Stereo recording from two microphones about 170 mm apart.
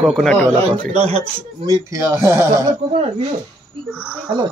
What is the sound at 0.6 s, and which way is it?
Speech, 35° right (ahead or behind).